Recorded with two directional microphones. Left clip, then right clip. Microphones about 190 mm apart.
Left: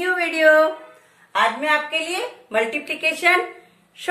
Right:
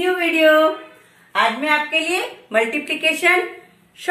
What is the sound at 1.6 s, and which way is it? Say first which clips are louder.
A woman's voice: right 2 dB; 60° left (ahead or behind).